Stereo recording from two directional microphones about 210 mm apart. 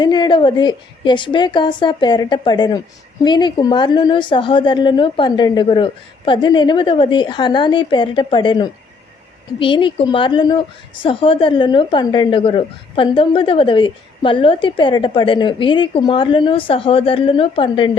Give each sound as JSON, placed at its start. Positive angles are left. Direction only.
{"t": 0.0, "sound": "a woman's voice", "side_deg": 20}